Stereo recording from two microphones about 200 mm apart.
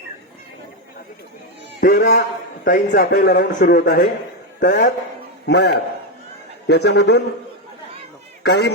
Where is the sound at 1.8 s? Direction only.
45° left (ahead or behind).